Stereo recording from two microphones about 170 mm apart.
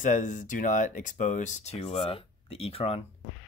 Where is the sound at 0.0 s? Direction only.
50° left (ahead or behind).